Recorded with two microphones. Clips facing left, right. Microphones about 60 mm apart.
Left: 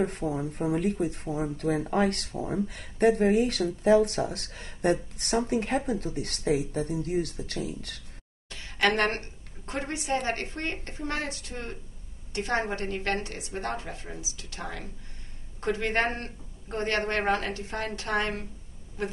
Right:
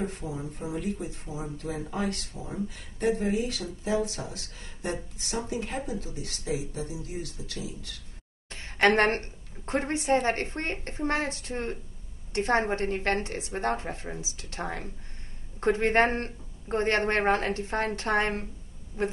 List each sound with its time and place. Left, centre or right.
0.0 s speech: left
8.5 s a woman's voice: right